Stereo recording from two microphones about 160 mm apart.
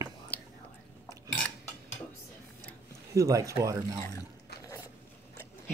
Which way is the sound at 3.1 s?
20° right (ahead or behind).